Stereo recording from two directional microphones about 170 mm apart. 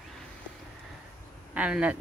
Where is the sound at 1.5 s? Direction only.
10° right (ahead or behind).